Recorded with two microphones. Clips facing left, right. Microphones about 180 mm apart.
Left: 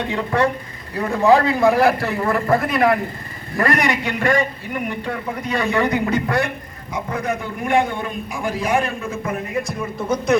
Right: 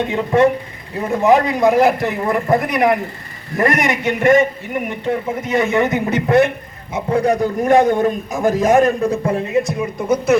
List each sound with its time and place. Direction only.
0.0 s a man's voice: 20° right (ahead or behind)